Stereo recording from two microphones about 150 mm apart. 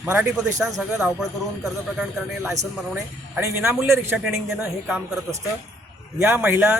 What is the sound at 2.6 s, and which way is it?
A man's voice, 15° right (ahead or behind).